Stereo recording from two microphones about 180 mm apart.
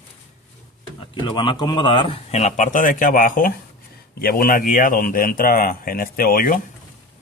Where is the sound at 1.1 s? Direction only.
25° left (ahead or behind); by 6.6 s 50° left (ahead or behind).